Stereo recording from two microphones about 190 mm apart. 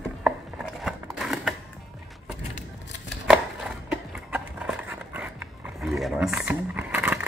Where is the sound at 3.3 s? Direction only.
5° right (ahead or behind).